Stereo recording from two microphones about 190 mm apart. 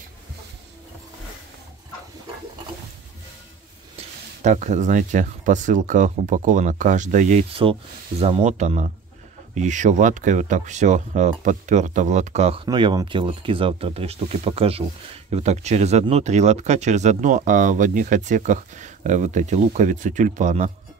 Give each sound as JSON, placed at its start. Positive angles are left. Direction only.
{"t": 4.4, "sound": "speech", "side_deg": -40}
{"t": 12.6, "sound": "speech", "side_deg": -25}